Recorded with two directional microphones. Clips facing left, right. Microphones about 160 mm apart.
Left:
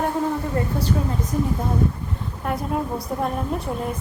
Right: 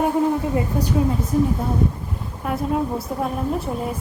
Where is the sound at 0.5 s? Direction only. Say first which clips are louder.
Right 1 dB; 15° right (ahead or behind).